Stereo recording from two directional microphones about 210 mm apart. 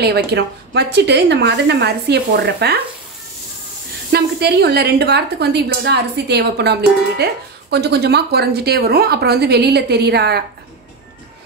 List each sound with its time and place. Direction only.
0.0 s a woman's voice: 50° right (ahead or behind)
4.1 s a woman's voice: 50° right (ahead or behind)